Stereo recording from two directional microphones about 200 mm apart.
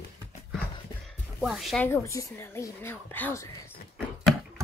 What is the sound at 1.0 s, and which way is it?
Music, centre (ahead or behind).